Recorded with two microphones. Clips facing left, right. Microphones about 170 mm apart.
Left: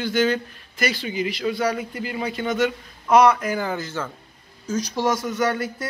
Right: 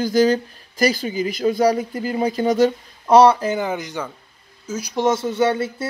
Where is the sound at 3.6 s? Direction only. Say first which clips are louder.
Right 2 dB; 20° right (ahead or behind).